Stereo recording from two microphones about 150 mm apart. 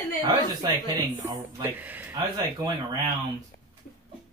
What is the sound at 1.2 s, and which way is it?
Speech, 15° right (ahead or behind).